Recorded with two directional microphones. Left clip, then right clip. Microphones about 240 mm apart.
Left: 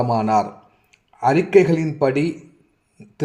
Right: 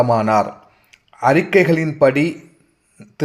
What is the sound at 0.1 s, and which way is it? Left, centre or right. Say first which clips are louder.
A man's voice: right 3 dB; right.